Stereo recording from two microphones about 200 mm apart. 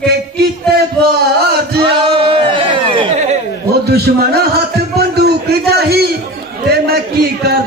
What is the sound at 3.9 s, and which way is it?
Speech, 50° right (ahead or behind).